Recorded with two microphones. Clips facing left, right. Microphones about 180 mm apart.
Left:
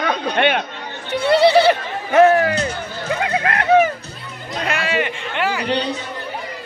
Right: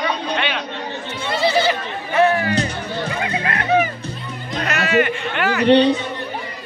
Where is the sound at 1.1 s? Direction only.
65° left (ahead or behind).